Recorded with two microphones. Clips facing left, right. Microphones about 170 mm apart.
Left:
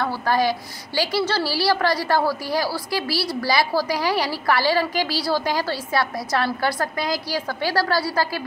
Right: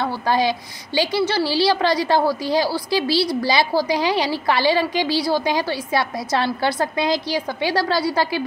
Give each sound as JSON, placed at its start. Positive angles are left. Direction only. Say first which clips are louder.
{"t": 0.0, "sound": "a woman's voice", "louder": "right 1 dB", "side_deg": -25}